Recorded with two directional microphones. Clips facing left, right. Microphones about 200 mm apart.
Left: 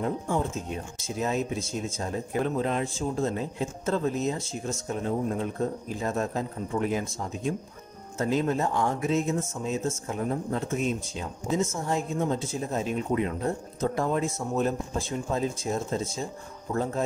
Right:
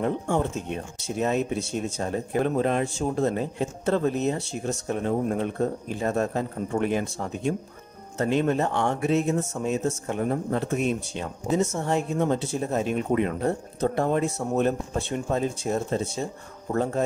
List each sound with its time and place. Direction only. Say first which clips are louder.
0.0 s speech: right 3 dB; 65° right (ahead or behind)